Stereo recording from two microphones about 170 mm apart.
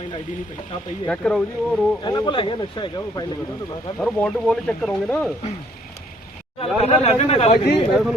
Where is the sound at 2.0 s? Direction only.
25° left (ahead or behind).